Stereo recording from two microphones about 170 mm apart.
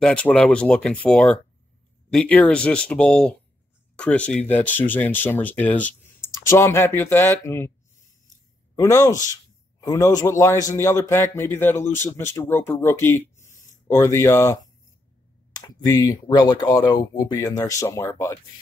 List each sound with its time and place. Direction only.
0.0 s a man's voice: 5° left (ahead or behind)
8.7 s a man's voice: 20° left (ahead or behind)